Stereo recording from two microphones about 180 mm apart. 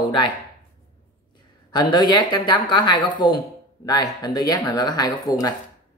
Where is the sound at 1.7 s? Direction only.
25° left (ahead or behind).